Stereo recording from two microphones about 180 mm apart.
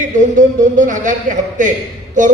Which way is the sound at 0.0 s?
45° right (ahead or behind).